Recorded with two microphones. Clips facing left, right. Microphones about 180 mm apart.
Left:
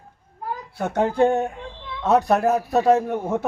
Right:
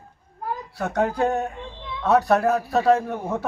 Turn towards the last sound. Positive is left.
turn(degrees=20)  # may be behind; listen again after turning